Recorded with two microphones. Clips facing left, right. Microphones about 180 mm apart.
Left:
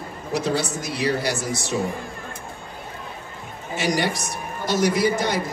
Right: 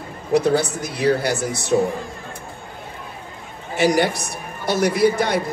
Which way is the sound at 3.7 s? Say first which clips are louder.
Right 5 dB; 60° right (ahead or behind).